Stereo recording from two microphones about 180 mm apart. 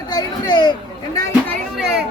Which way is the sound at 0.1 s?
25° left (ahead or behind).